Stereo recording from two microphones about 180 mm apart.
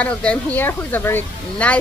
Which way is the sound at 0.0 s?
5° left (ahead or behind).